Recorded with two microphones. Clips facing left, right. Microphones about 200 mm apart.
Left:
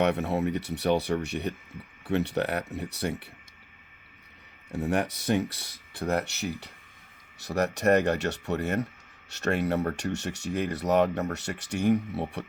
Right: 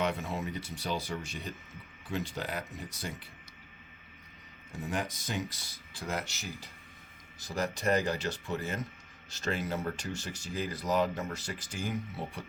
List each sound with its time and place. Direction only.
0.0 s speech: 65° left (ahead or behind)
4.7 s speech: 65° left (ahead or behind)